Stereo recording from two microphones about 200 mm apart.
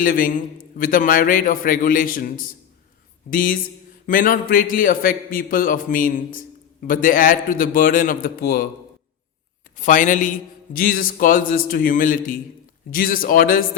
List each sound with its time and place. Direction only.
0.0 s a man's voice: 45° left (ahead or behind)
9.7 s a man's voice: 40° left (ahead or behind)